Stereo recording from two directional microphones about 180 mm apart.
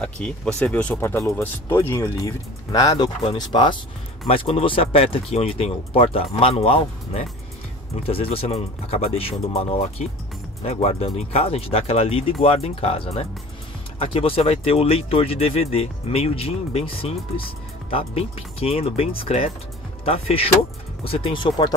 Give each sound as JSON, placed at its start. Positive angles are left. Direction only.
{"t": 0.0, "sound": "speech", "side_deg": 5}